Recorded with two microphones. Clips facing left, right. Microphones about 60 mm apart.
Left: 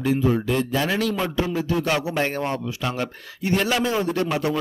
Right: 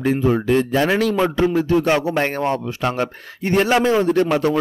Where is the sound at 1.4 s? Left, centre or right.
Right.